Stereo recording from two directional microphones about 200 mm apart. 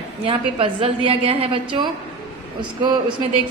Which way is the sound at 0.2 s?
25° right (ahead or behind).